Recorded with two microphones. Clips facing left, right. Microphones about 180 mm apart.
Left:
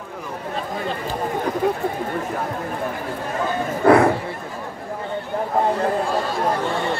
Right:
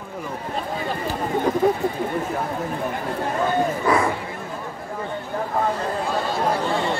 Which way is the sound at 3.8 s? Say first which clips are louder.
Left 10 dB; 60° left (ahead or behind).